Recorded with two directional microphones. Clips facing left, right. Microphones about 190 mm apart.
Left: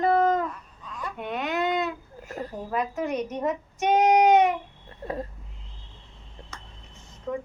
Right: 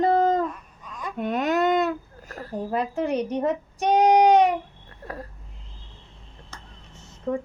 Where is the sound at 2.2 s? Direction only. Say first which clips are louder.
Left 8 dB; 20° left (ahead or behind).